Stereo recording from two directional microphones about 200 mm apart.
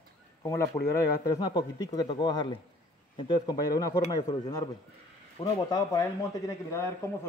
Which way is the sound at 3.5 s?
50° left (ahead or behind).